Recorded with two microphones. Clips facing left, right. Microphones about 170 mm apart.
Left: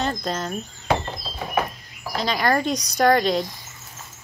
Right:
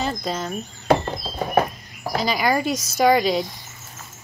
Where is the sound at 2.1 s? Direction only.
5° right (ahead or behind).